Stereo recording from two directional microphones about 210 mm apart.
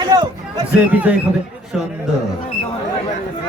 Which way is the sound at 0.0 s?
20° right (ahead or behind).